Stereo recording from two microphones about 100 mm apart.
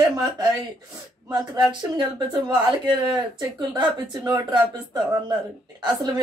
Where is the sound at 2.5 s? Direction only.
50° right (ahead or behind).